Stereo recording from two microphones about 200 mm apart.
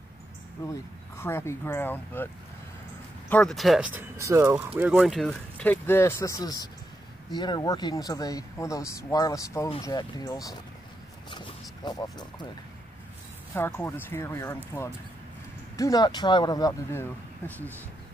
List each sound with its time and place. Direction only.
0.7 s speech: 10° left (ahead or behind)
3.3 s speech: 5° left (ahead or behind)
11.2 s a sound: 25° left (ahead or behind)
13.6 s speech: 10° left (ahead or behind)
15.7 s speech: 15° left (ahead or behind)